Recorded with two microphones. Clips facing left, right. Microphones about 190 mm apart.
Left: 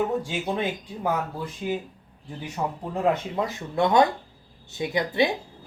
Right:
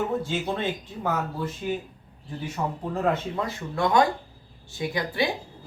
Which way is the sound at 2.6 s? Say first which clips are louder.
Left 1 dB; 10° left (ahead or behind).